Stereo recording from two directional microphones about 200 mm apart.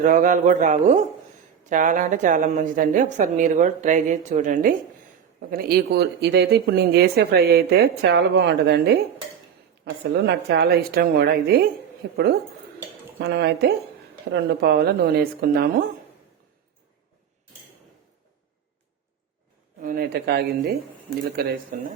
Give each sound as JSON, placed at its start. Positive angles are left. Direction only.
{"t": 0.0, "sound": "a woman's voice", "side_deg": -40}
{"t": 10.0, "sound": "speech", "side_deg": -55}
{"t": 19.8, "sound": "speech", "side_deg": -45}